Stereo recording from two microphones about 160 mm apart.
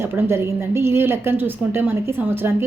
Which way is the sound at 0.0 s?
15° right (ahead or behind).